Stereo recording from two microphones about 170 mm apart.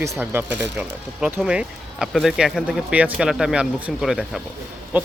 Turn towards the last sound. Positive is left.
turn(degrees=-10)  # may be behind; listen again after turning